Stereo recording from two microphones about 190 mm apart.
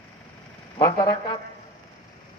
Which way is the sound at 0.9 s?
25° left (ahead or behind).